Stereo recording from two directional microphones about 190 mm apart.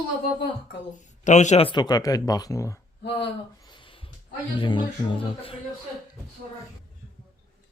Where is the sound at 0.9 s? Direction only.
40° left (ahead or behind); by 2.8 s 15° left (ahead or behind).